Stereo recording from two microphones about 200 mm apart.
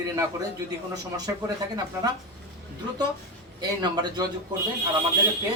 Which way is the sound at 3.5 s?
20° right (ahead or behind).